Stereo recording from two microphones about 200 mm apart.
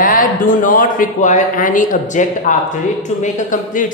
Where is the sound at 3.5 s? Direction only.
40° left (ahead or behind).